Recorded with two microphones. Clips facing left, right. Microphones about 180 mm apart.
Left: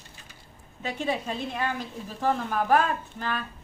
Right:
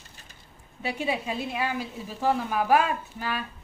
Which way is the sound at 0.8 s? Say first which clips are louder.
Even; 10° right (ahead or behind).